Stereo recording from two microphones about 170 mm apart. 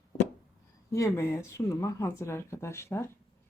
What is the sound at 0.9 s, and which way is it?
A woman's voice, 15° left (ahead or behind).